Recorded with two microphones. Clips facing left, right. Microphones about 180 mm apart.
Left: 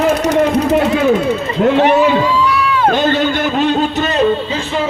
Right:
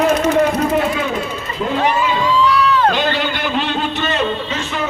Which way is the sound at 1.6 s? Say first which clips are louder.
Left 7 dB; 70° left (ahead or behind).